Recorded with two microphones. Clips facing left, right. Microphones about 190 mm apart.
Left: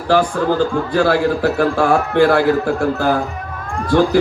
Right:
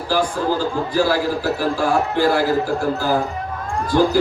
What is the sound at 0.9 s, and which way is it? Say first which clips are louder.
A man's voice: left 4 dB; 65° left (ahead or behind).